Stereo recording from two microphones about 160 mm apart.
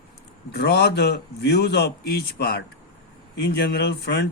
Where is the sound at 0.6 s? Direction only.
90° left.